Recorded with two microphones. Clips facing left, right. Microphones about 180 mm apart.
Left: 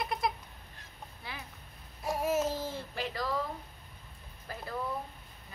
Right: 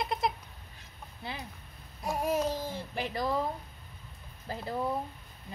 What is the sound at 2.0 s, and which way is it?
Babbling, 5° left (ahead or behind).